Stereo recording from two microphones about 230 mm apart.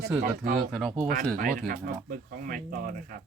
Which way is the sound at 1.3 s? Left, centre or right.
Right.